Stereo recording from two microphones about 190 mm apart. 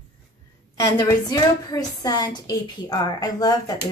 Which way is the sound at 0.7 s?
20° left (ahead or behind).